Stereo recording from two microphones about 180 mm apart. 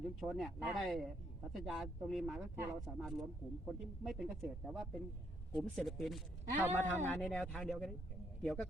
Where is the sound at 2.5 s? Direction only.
15° right (ahead or behind).